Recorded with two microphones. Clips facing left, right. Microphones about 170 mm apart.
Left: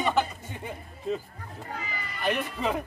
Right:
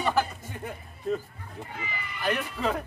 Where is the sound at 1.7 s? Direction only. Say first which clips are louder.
Left 3 dB; 40° left (ahead or behind).